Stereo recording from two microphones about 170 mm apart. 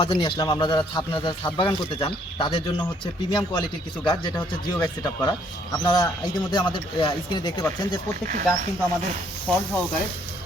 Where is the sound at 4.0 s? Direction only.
25° left (ahead or behind).